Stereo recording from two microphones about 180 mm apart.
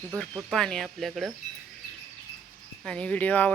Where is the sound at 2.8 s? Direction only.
5° left (ahead or behind).